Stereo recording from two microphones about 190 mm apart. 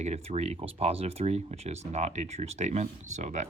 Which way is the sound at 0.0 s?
35° right (ahead or behind).